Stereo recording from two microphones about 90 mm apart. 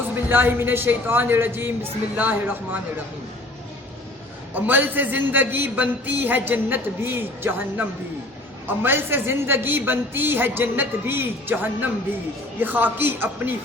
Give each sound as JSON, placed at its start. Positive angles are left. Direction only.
{"t": 0.3, "sound": "a man's voice", "side_deg": -25}
{"t": 4.5, "sound": "a man's voice", "side_deg": -20}